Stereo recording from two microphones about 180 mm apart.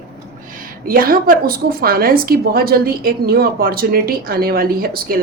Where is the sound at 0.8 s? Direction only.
55° right (ahead or behind).